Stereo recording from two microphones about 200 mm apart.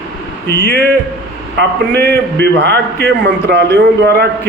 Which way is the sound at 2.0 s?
55° right (ahead or behind).